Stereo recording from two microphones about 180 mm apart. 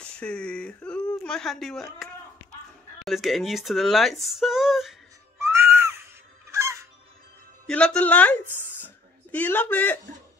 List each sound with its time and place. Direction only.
0.0 s a sound: 5° left (ahead or behind)
1.2 s speech: 5° left (ahead or behind)
3.1 s speech: centre (ahead or behind)
5.4 s music: 15° right (ahead or behind)
6.5 s honk: 15° right (ahead or behind)
7.6 s speech: 5° left (ahead or behind)
8.8 s a sound: 10° left (ahead or behind)